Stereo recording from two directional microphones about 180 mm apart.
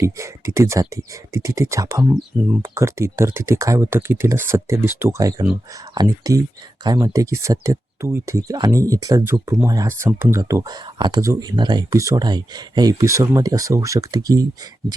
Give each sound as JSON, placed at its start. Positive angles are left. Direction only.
{"t": 0.0, "sound": "speech", "side_deg": -15}